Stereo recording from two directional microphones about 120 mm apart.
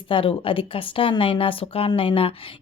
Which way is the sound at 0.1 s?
50° left (ahead or behind).